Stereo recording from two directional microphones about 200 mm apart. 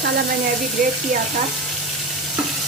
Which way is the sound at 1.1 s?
40° right (ahead or behind).